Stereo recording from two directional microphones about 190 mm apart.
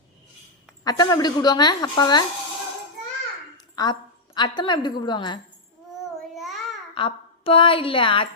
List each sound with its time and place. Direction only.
0.9 s a woman's voice: 20° left (ahead or behind)
3.8 s a woman's voice: 20° left (ahead or behind)
6.3 s child singing: centre (ahead or behind)
6.9 s a woman's voice: 25° left (ahead or behind)